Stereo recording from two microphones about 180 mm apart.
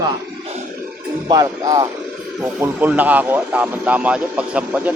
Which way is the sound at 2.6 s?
10° right (ahead or behind).